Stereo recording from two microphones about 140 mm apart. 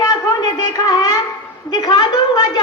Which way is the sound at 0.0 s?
30° left (ahead or behind).